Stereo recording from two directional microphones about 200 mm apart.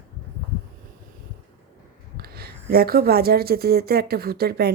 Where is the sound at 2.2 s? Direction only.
50° right (ahead or behind).